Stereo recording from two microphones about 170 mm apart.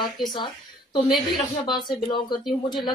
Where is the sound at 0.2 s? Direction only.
25° left (ahead or behind).